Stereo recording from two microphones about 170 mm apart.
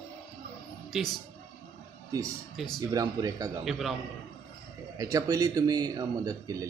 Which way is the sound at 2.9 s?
20° right (ahead or behind).